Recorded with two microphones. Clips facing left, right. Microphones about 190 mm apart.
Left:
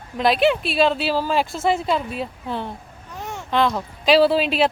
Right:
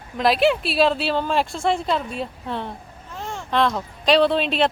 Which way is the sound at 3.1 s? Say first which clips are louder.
Even; 20° left (ahead or behind).